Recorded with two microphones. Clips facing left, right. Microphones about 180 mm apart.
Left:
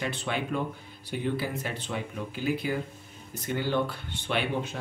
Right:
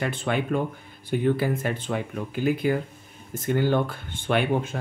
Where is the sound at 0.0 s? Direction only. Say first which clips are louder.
Right 5 dB; 50° right (ahead or behind).